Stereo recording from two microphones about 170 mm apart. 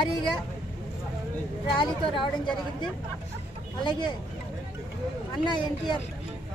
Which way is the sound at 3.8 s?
25° left (ahead or behind).